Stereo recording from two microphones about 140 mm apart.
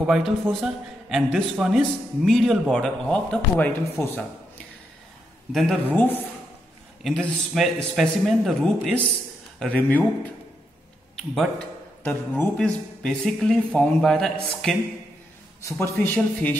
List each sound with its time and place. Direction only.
0.0 s a man's voice: centre (ahead or behind); by 4.2 s 15° left (ahead or behind)
5.5 s a man's voice: centre (ahead or behind)
5.9 s a man's voice: 15° left (ahead or behind)
12.0 s a man's voice: 10° left (ahead or behind)
15.6 s speech: 20° left (ahead or behind)